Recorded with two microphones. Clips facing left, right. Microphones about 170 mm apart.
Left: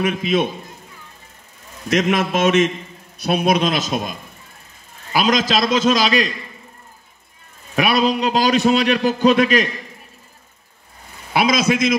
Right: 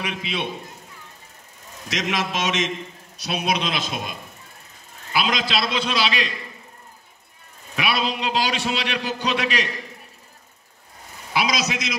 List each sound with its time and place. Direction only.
0.0 s a man's voice: 45° left (ahead or behind)
1.9 s a man's voice: 55° left (ahead or behind)
5.1 s a man's voice: 45° left (ahead or behind)
7.7 s a man's voice: 45° left (ahead or behind)
11.3 s a man's voice: 55° left (ahead or behind)